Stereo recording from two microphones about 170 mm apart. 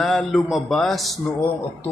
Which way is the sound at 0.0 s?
Centre (ahead or behind).